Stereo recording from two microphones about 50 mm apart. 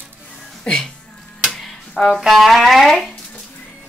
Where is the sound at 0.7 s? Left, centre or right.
Left.